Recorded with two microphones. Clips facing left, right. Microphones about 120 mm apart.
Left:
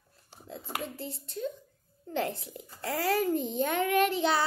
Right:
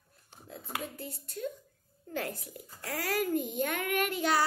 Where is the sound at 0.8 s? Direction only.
30° left (ahead or behind).